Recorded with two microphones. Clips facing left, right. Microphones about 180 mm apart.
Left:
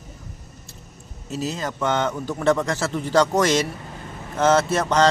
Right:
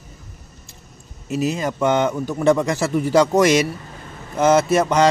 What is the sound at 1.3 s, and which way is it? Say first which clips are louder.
Speech: right 6 dB; 15° right (ahead or behind).